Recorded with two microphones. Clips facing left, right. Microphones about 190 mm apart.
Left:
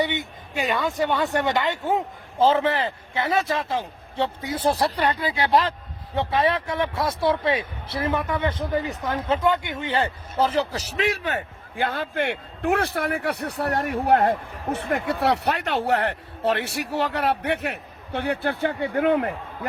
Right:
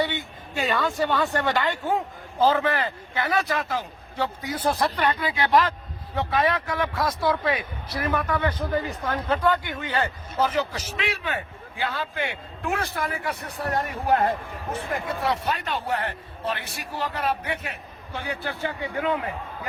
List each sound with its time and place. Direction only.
0.0 s a man's voice: 15° left (ahead or behind); by 19.3 s 55° left (ahead or behind)